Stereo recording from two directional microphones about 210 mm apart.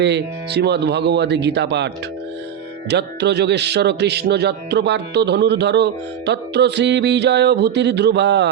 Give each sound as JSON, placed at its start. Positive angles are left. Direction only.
{"t": 0.0, "sound": "a man's voice", "side_deg": -55}
{"t": 2.9, "sound": "a man's voice", "side_deg": -55}